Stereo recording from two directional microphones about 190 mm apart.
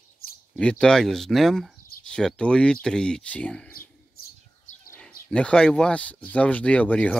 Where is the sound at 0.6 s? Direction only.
5° left (ahead or behind).